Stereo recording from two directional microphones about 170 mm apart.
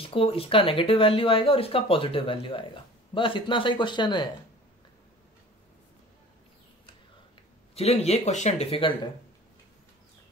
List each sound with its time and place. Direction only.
0.0 s speech: 35° left (ahead or behind)
7.7 s speech: 35° left (ahead or behind)